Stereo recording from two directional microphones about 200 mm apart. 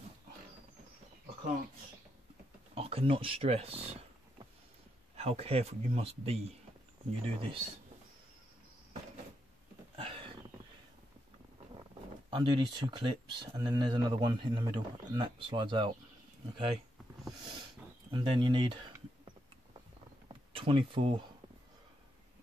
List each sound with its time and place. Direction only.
2.7 s speech: 30° right (ahead or behind)
5.1 s speech: 30° right (ahead or behind)
9.9 s a sound: 25° right (ahead or behind)
12.3 s speech: 25° right (ahead or behind)
18.1 s speech: 25° right (ahead or behind)
20.5 s speech: 25° right (ahead or behind)